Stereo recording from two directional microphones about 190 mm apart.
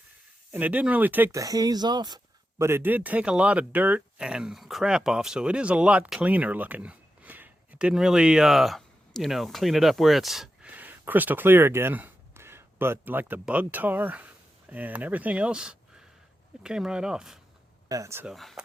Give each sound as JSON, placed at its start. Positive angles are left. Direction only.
{"t": 0.5, "sound": "speech", "side_deg": -10}
{"t": 17.8, "sound": "speech", "side_deg": -15}
{"t": 18.3, "sound": "speech", "side_deg": 0}